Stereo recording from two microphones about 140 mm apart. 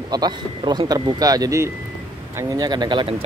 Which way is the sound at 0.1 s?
30° right (ahead or behind).